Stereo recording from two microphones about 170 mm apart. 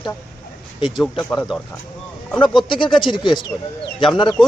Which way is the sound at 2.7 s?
30° left (ahead or behind).